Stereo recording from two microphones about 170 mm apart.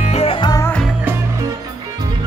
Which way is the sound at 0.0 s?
40° left (ahead or behind).